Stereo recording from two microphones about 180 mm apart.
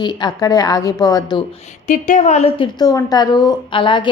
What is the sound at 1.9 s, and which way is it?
Speech, 45° left (ahead or behind).